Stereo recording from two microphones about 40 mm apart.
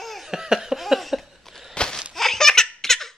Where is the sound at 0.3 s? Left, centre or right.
Centre.